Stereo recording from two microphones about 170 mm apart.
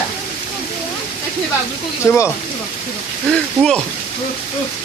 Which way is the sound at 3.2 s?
5° left (ahead or behind).